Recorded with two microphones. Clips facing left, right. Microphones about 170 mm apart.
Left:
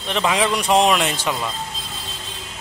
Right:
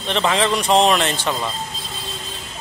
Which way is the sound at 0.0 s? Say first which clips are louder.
Right 1 dB; 5° left (ahead or behind).